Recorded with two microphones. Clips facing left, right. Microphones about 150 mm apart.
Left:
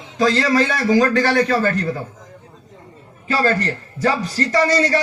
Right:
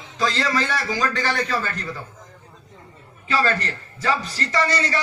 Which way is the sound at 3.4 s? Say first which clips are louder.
Left 5 dB; 45° left (ahead or behind).